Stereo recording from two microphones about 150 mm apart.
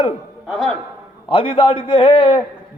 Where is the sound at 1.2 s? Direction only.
35° left (ahead or behind).